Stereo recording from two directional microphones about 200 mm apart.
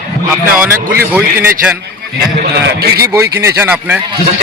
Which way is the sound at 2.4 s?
50° right (ahead or behind).